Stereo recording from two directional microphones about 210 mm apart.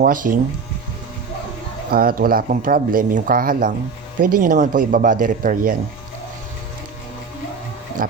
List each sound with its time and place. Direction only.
0.0 s speech: 40° right (ahead or behind)
1.9 s speech: 45° right (ahead or behind)